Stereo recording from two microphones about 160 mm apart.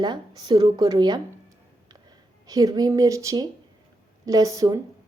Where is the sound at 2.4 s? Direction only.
25° right (ahead or behind).